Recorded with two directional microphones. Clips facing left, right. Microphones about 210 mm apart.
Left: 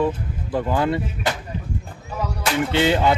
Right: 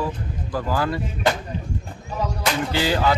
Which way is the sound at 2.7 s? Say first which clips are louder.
Left 3 dB; 25° left (ahead or behind).